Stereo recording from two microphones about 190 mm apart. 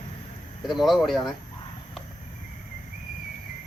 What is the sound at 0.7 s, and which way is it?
Speech, centre (ahead or behind).